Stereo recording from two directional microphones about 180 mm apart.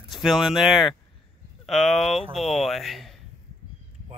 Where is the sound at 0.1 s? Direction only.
Centre (ahead or behind).